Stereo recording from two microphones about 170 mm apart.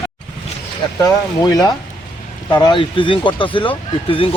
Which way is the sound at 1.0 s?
20° left (ahead or behind).